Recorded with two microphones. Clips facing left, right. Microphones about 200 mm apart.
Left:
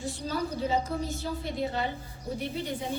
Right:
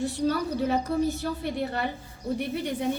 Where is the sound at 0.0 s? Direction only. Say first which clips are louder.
Right 6 dB; 65° right (ahead or behind).